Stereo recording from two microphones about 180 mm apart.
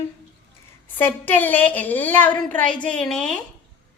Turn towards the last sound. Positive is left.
turn(degrees=5)  # may be behind; listen again after turning